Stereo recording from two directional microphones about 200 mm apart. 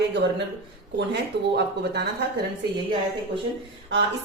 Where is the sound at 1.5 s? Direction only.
55° right (ahead or behind).